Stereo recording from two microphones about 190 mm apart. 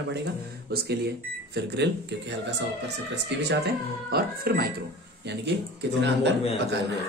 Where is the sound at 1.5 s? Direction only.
65° right (ahead or behind).